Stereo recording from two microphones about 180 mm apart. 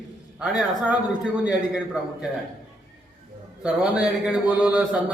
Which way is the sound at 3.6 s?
5° right (ahead or behind).